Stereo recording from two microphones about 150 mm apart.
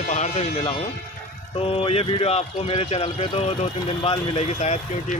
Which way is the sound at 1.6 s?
40° left (ahead or behind).